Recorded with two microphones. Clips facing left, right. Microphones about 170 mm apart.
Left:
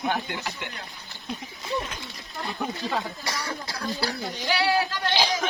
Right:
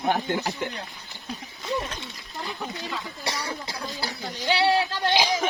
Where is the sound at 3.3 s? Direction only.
30° right (ahead or behind).